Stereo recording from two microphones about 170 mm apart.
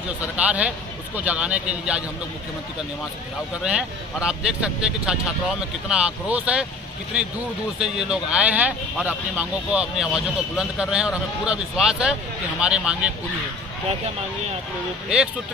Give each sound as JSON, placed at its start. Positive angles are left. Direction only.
{"t": 0.4, "sound": "speech", "side_deg": -10}
{"t": 3.6, "sound": "speech", "side_deg": -5}
{"t": 7.8, "sound": "speech", "side_deg": -5}